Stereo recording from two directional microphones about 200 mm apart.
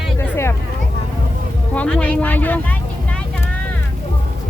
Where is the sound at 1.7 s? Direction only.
5° left (ahead or behind).